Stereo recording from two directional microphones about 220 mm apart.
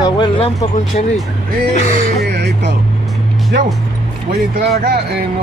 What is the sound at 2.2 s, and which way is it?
Music, 50° right (ahead or behind).